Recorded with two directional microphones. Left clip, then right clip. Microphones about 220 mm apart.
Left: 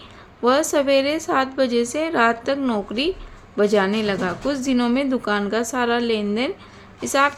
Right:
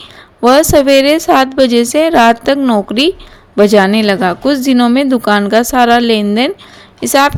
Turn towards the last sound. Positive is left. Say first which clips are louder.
# right 9 dB
turn(degrees=-35)  # may be behind; listen again after turning